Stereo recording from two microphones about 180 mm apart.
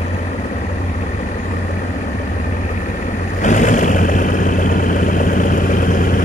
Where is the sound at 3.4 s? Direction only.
45° left (ahead or behind).